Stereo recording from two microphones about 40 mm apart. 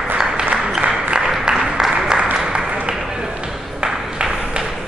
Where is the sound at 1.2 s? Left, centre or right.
Centre.